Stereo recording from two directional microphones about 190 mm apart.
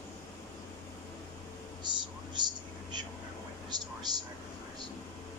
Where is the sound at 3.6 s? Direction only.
20° right (ahead or behind).